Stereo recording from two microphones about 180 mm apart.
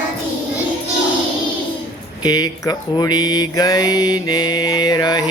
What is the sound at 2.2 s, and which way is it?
Mantra, 20° left (ahead or behind).